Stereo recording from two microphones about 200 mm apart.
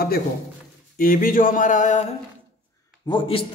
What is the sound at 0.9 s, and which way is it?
A man's voice, 45° left (ahead or behind).